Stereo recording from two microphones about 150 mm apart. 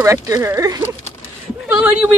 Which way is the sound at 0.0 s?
20° right (ahead or behind).